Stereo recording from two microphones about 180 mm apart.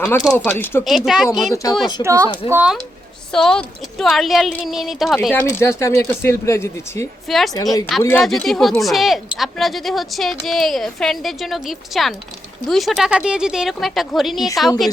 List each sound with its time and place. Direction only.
0.0 s speech: 5° left (ahead or behind)
0.9 s speech: centre (ahead or behind)
2.0 s speech: 15° right (ahead or behind)
3.3 s speech: 5° left (ahead or behind)
7.3 s speech: centre (ahead or behind)
7.5 s speech: 20° left (ahead or behind)
8.1 s speech: centre (ahead or behind)